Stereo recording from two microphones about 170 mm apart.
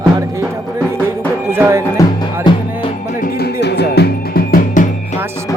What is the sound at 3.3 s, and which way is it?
Music, 75° left (ahead or behind).